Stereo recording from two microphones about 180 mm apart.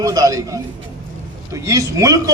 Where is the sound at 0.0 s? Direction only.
20° right (ahead or behind).